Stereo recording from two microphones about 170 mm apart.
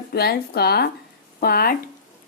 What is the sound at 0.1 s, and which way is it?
Speech, 70° left (ahead or behind).